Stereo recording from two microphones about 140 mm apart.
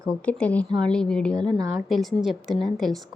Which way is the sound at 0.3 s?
10° left (ahead or behind).